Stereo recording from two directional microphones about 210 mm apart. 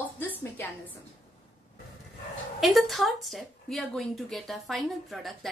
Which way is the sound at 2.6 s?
Centre (ahead or behind).